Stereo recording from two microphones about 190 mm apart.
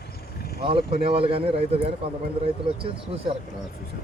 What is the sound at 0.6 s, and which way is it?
Speech, 30° right (ahead or behind).